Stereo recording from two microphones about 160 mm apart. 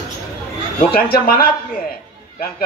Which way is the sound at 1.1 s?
70° left (ahead or behind).